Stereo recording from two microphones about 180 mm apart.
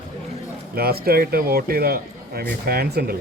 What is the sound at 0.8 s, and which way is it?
Speech, 60° right (ahead or behind).